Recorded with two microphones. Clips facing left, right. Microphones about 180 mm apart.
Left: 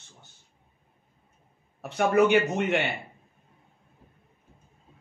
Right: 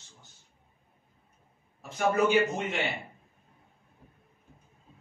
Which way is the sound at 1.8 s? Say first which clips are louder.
Left 5 dB; 65° left (ahead or behind).